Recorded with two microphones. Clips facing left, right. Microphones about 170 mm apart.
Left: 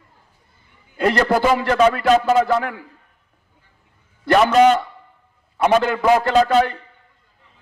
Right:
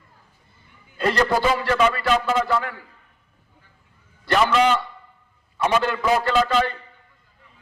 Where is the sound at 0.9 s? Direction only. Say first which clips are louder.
Left 3 dB; 55° left (ahead or behind).